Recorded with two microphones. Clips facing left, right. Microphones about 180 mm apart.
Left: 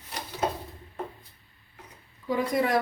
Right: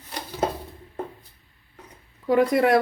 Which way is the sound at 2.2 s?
70° right (ahead or behind).